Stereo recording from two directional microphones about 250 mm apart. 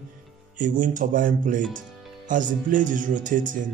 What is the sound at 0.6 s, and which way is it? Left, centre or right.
A man's voice, right.